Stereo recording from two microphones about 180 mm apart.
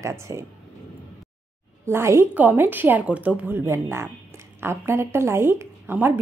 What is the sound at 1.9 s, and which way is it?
A woman's voice, 15° right (ahead or behind).